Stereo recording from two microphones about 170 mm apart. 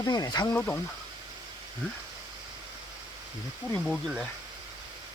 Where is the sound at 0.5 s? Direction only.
10° left (ahead or behind).